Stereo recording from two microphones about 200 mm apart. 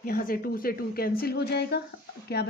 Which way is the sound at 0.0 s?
45° left (ahead or behind).